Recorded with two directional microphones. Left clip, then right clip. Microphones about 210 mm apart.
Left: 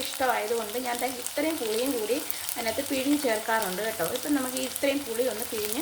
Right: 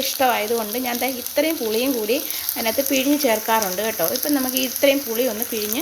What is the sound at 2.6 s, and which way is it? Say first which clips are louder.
Frying: right 8 dB; 35° right (ahead or behind).